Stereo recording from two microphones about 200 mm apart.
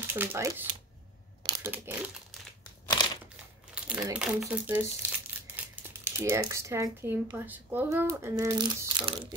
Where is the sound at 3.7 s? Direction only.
5° right (ahead or behind).